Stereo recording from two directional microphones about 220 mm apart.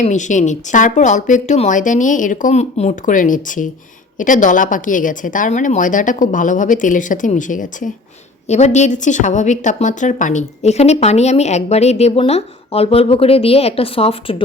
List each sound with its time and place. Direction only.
0.0 s a woman's voice: 35° left (ahead or behind)